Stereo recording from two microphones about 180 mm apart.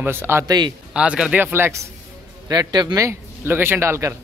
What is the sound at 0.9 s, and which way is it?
A man's voice, 5° right (ahead or behind).